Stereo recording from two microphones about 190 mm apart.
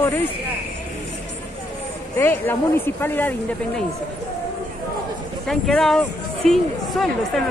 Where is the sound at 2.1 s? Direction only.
10° left (ahead or behind).